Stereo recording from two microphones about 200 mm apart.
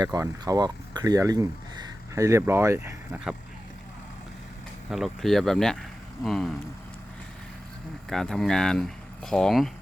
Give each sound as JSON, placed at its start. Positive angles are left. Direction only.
{"t": 0.0, "sound": "speech", "side_deg": -20}
{"t": 4.9, "sound": "speech", "side_deg": 0}
{"t": 8.1, "sound": "speech", "side_deg": 5}